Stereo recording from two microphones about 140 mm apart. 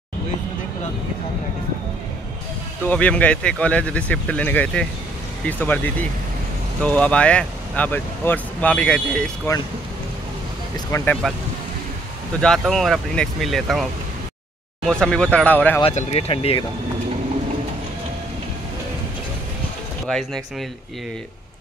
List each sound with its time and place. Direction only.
2.8 s speech: 10° left (ahead or behind)
10.9 s speech: 20° left (ahead or behind)
12.4 s speech: 5° left (ahead or behind)
14.9 s speech: 5° left (ahead or behind)
15.9 s speech: 50° left (ahead or behind)
20.1 s speech: 5° left (ahead or behind)